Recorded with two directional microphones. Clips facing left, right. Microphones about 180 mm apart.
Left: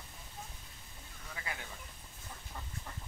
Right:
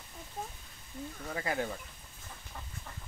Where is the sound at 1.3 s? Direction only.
50° right (ahead or behind).